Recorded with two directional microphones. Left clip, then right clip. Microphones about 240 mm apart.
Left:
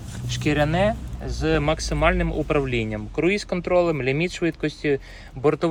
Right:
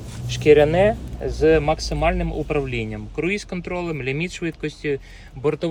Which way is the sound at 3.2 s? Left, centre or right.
Centre.